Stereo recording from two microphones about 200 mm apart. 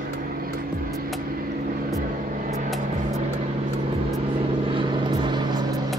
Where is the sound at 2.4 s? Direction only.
40° right (ahead or behind).